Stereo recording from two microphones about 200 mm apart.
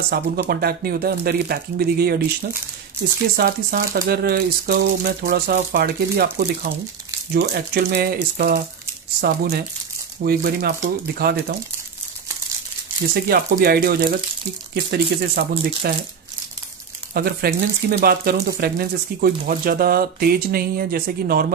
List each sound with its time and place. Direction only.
0.1 s speech: 50° right (ahead or behind)
3.3 s speech: 45° right (ahead or behind)
13.1 s speech: 50° right (ahead or behind)
17.1 s speech: 50° right (ahead or behind)